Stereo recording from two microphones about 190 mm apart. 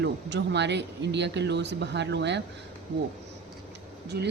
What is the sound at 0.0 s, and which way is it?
Speech, 65° right (ahead or behind).